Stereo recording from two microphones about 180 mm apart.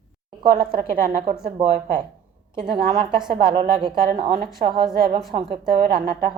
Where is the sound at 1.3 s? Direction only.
35° right (ahead or behind).